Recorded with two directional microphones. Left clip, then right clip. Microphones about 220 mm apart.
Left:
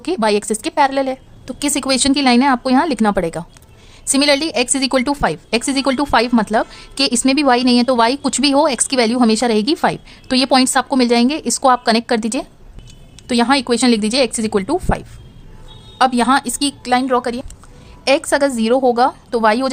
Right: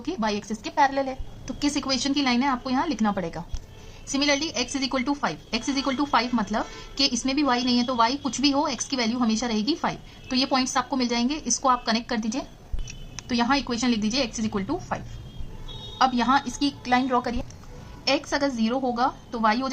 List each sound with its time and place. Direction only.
0.0 s a woman's voice: 45° left (ahead or behind)